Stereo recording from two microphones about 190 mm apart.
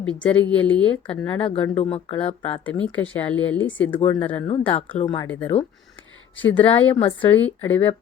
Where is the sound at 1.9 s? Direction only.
30° left (ahead or behind).